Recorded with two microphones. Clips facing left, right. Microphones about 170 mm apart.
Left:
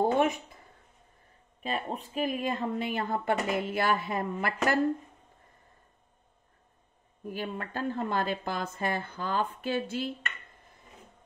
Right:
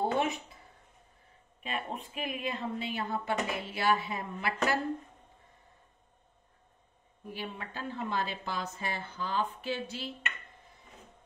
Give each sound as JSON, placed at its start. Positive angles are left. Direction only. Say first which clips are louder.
{"t": 0.0, "sound": "a sound", "louder": "left 5 dB", "side_deg": 50}
{"t": 1.6, "sound": "a woman's voice", "louder": "left 4 dB", "side_deg": 35}
{"t": 7.3, "sound": "a woman's voice", "louder": "left 6 dB", "side_deg": 50}